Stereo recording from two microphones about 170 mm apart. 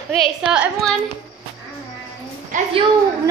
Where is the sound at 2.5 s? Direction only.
50° right (ahead or behind).